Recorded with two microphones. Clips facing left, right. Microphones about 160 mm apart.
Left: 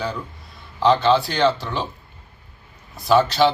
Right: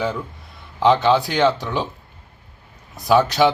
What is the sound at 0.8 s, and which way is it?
Speech, 20° right (ahead or behind).